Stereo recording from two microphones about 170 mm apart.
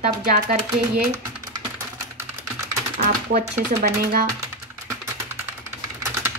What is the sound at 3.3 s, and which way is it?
Speech, 65° right (ahead or behind).